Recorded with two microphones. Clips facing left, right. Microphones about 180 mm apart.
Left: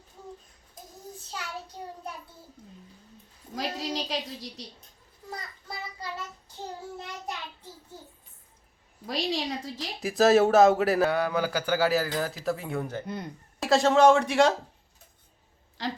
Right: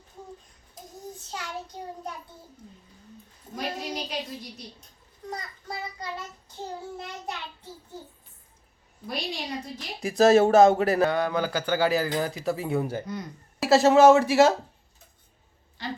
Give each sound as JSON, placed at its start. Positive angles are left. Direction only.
{"t": 3.5, "sound": "a child's voice", "side_deg": 90}
{"t": 9.0, "sound": "a child's voice", "side_deg": 90}
{"t": 10.0, "sound": "speech", "side_deg": 0}
{"t": 15.8, "sound": "a child's voice", "side_deg": 90}